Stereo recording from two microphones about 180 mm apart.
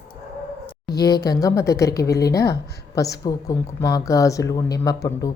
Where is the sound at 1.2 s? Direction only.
20° left (ahead or behind).